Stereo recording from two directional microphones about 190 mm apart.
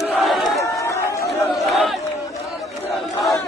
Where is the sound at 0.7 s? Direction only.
15° left (ahead or behind).